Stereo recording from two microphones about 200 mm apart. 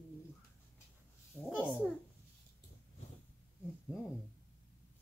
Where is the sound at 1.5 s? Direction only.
5° right (ahead or behind).